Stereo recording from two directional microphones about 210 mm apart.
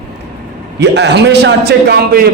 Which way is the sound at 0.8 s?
55° right (ahead or behind).